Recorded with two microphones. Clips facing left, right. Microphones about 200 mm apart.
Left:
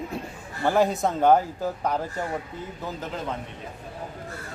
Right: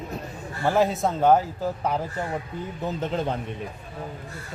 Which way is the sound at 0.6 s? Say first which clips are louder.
Even; centre (ahead or behind).